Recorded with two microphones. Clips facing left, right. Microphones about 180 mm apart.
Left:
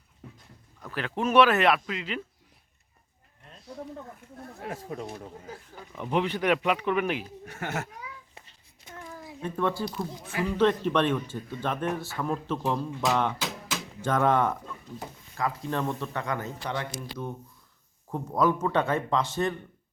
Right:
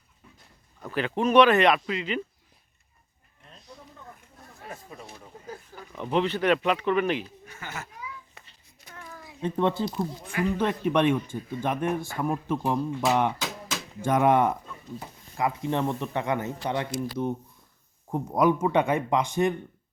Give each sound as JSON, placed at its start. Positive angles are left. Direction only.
{"t": 0.9, "sound": "speech", "side_deg": 0}
{"t": 4.4, "sound": "a sound", "side_deg": 70}
{"t": 6.1, "sound": "speech", "side_deg": 10}
{"t": 7.4, "sound": "speech", "side_deg": 70}
{"t": 8.4, "sound": "a sound", "side_deg": 25}
{"t": 9.4, "sound": "speech", "side_deg": -20}